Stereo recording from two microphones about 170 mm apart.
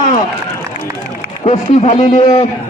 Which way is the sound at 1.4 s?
40° left (ahead or behind).